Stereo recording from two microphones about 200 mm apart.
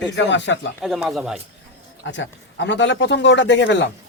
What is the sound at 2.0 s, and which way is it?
A man's voice, 65° left (ahead or behind).